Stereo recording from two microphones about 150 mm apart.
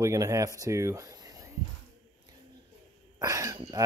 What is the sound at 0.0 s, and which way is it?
Speech, 20° right (ahead or behind).